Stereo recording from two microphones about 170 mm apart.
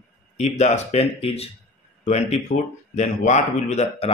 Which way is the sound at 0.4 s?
40° left (ahead or behind).